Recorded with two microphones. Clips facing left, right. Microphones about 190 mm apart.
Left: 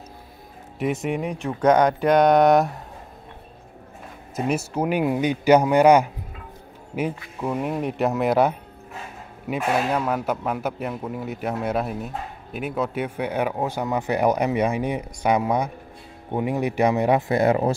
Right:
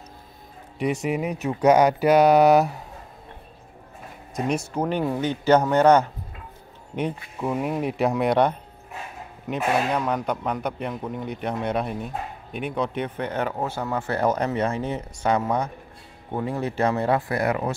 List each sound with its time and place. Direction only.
0.7 s a man's voice: centre (ahead or behind)
4.4 s speech: 5° left (ahead or behind)
7.3 s a man's voice: centre (ahead or behind); by 17.7 s 25° left (ahead or behind)